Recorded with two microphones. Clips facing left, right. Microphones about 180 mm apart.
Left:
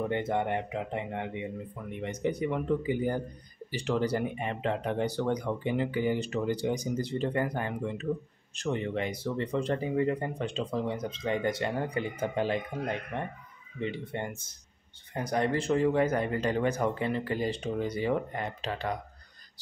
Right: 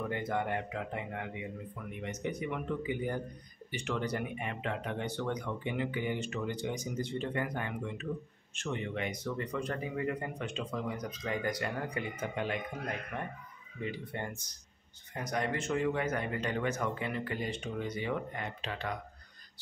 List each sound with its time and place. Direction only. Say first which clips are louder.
0.0 s speech: left 5 dB; 25° left (ahead or behind)